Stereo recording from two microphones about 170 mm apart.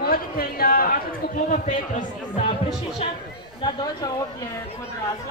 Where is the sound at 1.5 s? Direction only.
45° left (ahead or behind).